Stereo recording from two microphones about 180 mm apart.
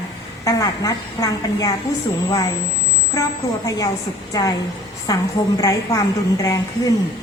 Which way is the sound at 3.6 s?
20° left (ahead or behind).